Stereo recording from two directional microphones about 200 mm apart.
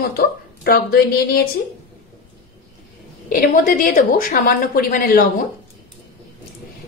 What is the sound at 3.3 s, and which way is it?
A woman's voice, 40° left (ahead or behind).